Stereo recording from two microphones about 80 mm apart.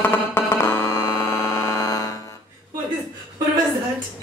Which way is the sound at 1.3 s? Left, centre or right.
Left.